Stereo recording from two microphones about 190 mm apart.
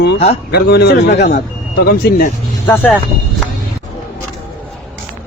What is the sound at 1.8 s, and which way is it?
Speech, 50° left (ahead or behind).